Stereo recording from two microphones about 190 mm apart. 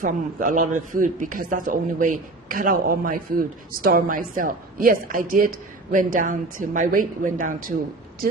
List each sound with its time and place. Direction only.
0.0 s a man's voice: 45° right (ahead or behind)